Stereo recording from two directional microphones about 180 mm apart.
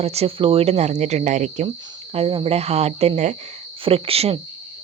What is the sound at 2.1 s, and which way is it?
Speech, 30° right (ahead or behind).